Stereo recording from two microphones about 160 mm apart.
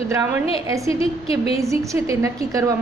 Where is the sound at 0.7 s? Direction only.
20° right (ahead or behind).